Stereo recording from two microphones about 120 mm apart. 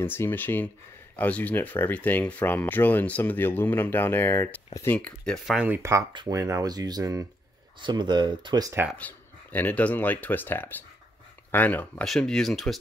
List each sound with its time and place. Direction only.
0.0 s speech: 20° left (ahead or behind)
4.9 s speech: 10° left (ahead or behind)
5.7 s speech: 25° right (ahead or behind)
8.9 s speech: 15° left (ahead or behind)